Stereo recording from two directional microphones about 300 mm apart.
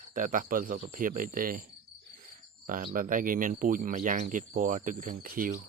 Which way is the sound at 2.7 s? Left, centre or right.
Right.